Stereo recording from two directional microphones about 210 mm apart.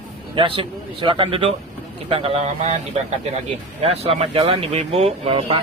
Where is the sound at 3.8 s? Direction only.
30° right (ahead or behind).